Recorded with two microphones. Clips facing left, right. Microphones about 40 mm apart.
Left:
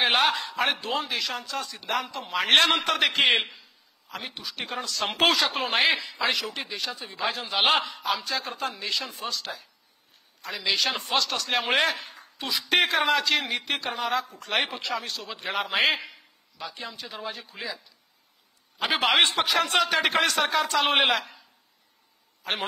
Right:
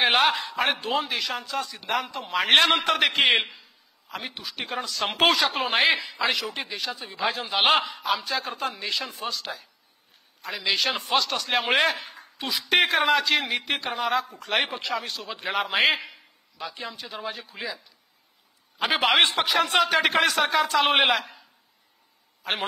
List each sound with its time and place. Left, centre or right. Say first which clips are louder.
0.0 s a man's voice: right 2 dB; centre
18.8 s a man's voice: right 1 dB; centre